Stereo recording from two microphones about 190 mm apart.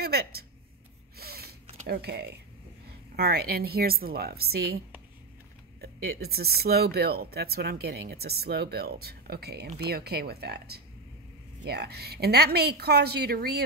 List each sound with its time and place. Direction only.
0.0 s speech: 55° right (ahead or behind)
1.1 s a sound: 55° right (ahead or behind)
1.9 s speech: 60° right (ahead or behind)
5.8 s speech: 55° right (ahead or behind)